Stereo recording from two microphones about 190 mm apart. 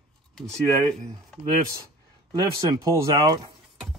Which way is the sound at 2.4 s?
20° right (ahead or behind).